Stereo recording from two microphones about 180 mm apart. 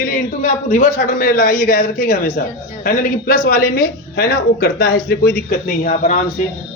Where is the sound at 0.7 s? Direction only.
45° left (ahead or behind).